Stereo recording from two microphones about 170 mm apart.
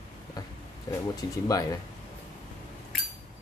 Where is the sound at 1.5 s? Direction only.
20° left (ahead or behind).